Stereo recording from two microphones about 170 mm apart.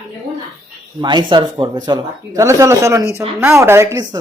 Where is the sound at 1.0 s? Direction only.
25° right (ahead or behind).